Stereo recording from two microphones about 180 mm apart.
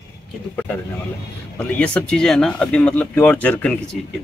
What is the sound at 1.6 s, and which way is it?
Speech, 5° left (ahead or behind).